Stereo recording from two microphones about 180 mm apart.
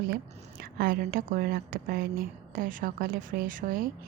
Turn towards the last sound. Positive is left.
turn(degrees=-50)  # may be behind; listen again after turning